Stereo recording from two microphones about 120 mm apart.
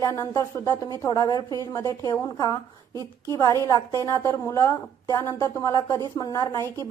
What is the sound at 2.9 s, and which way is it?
Speech, 35° right (ahead or behind).